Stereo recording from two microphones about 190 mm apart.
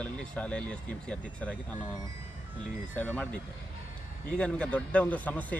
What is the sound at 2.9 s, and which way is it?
Speech, 5° left (ahead or behind).